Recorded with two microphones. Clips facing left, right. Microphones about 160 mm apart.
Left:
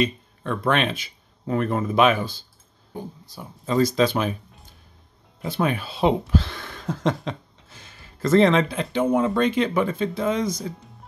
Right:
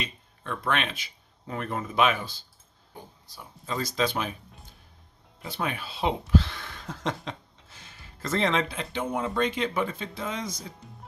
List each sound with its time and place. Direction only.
0.0 s speech: 45° left (ahead or behind)
3.6 s speech: 45° left (ahead or behind)
5.4 s speech: 45° left (ahead or behind)